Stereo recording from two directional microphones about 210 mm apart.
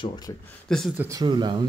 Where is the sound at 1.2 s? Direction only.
20° right (ahead or behind).